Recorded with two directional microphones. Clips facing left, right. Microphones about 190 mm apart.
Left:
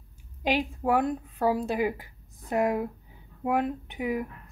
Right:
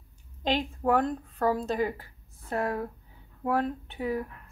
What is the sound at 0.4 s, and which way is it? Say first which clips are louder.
A woman's voice: left 1 dB; 10° left (ahead or behind).